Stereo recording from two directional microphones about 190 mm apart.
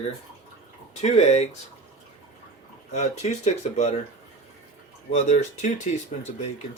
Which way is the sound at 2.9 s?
35° left (ahead or behind).